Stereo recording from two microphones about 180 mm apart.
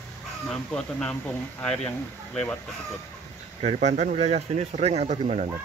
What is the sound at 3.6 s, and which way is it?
Speech, 40° right (ahead or behind).